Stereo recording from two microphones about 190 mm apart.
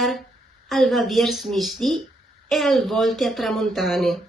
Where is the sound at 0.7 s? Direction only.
Centre (ahead or behind).